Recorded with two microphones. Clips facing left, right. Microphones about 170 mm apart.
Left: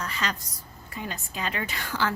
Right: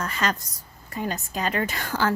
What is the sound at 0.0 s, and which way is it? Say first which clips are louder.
A woman's voice: right 5 dB; 45° right (ahead or behind).